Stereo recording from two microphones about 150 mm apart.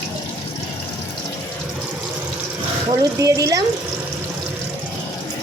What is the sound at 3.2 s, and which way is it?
Speech, 20° right (ahead or behind).